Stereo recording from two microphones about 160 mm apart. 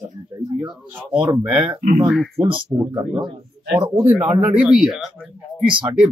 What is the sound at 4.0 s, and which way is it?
A man's voice, 10° right (ahead or behind).